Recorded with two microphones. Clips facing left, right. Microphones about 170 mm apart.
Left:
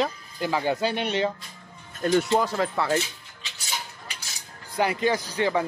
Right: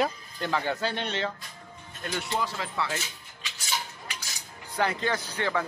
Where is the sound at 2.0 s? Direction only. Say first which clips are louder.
Left 9 dB; 40° left (ahead or behind).